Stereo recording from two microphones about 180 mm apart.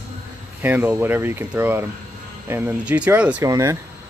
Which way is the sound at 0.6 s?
10° right (ahead or behind).